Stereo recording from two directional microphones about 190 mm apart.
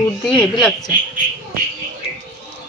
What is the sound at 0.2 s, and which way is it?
Speech, 5° left (ahead or behind).